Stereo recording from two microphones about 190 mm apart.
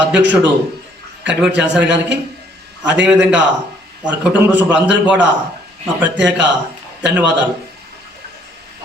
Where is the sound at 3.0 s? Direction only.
5° right (ahead or behind).